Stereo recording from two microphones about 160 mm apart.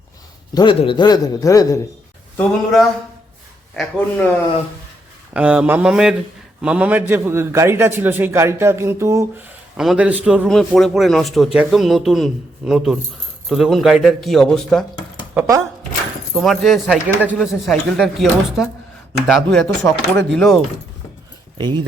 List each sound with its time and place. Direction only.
0.5 s a man's voice: 30° left (ahead or behind)
2.4 s speech: centre (ahead or behind)
5.3 s a man's voice: 5° right (ahead or behind)
9.7 s a man's voice: 5° right (ahead or behind)
16.3 s speech: centre (ahead or behind)
19.6 s speech: 15° left (ahead or behind)
20.3 s speech: centre (ahead or behind)
21.6 s speech: 25° right (ahead or behind)